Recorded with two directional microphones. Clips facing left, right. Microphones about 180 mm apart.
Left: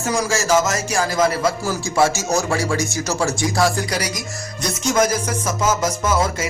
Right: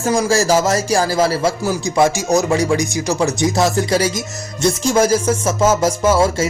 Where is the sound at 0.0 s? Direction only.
30° right (ahead or behind).